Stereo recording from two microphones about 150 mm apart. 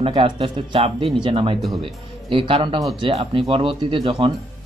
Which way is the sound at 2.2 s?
35° right (ahead or behind).